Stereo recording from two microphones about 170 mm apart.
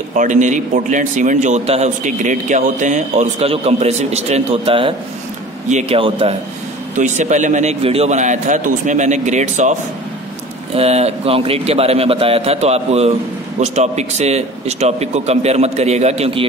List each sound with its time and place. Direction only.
0.1 s a man's voice: 45° right (ahead or behind); by 6.3 s 30° right (ahead or behind)
7.0 s a man's voice: 45° right (ahead or behind)